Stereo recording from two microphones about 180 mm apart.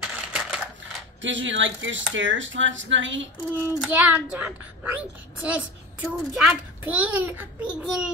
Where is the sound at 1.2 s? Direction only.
90° right.